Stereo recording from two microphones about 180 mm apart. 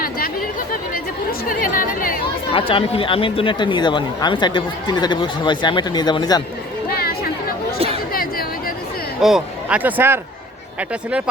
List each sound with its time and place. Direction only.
1.3 s chatter: 50° left (ahead or behind)
2.5 s speech: 30° left (ahead or behind)
6.9 s chatter: 60° left (ahead or behind)
9.2 s speech: 5° right (ahead or behind)